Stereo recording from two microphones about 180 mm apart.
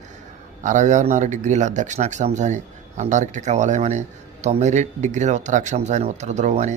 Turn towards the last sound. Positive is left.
turn(degrees=-40)  # may be behind; listen again after turning